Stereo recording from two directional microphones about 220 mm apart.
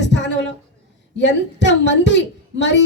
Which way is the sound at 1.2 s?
55° left (ahead or behind).